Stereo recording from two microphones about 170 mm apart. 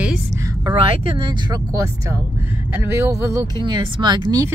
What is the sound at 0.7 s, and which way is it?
Speech, 30° right (ahead or behind).